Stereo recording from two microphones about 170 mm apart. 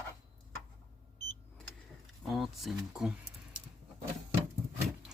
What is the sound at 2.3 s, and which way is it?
Speech, centre (ahead or behind).